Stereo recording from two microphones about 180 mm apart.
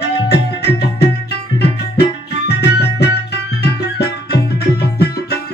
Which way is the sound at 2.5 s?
65° left (ahead or behind).